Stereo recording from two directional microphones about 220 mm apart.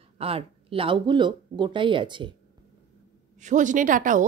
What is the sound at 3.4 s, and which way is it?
Speech, 35° right (ahead or behind).